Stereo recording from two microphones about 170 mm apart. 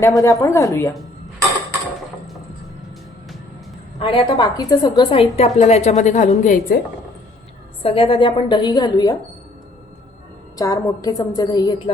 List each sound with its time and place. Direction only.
0.2 s speech: 20° left (ahead or behind)
4.0 s a woman's voice: 30° left (ahead or behind); by 6.7 s 50° left (ahead or behind)
7.8 s a woman's voice: 30° left (ahead or behind)
10.6 s a woman's voice: 20° left (ahead or behind)